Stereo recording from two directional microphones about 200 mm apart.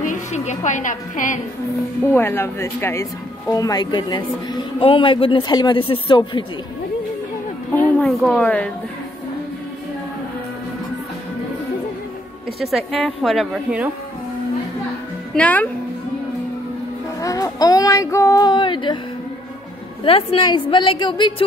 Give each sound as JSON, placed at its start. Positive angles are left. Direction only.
{"t": 0.0, "sound": "a woman's voice", "side_deg": 40}
{"t": 2.1, "sound": "speech", "side_deg": 10}
{"t": 7.7, "sound": "a woman's voice", "side_deg": 10}
{"t": 12.5, "sound": "a woman's voice", "side_deg": 0}
{"t": 15.3, "sound": "a woman's voice", "side_deg": 5}
{"t": 17.2, "sound": "child singing", "side_deg": 15}
{"t": 20.0, "sound": "speech", "side_deg": 30}